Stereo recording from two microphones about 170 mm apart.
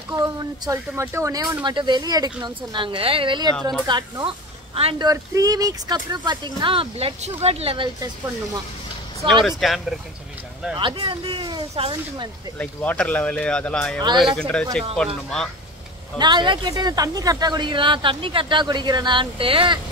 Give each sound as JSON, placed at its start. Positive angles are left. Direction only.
{"t": 0.1, "sound": "speech", "side_deg": -20}
{"t": 5.0, "sound": "speech", "side_deg": -20}
{"t": 9.2, "sound": "speech", "side_deg": -30}
{"t": 9.6, "sound": "speech", "side_deg": 0}
{"t": 10.8, "sound": "speech", "side_deg": -30}
{"t": 12.5, "sound": "speech", "side_deg": 10}
{"t": 16.2, "sound": "speech", "side_deg": -25}